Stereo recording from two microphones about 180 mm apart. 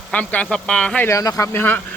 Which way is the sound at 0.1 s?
5° left (ahead or behind).